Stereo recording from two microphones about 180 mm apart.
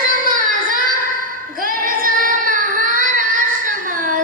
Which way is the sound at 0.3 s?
50° right (ahead or behind).